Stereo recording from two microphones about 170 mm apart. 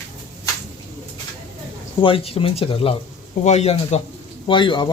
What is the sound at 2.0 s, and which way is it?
Speech, 30° left (ahead or behind).